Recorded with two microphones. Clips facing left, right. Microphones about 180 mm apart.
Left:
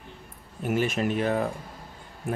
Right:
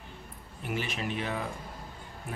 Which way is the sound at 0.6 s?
45° left (ahead or behind).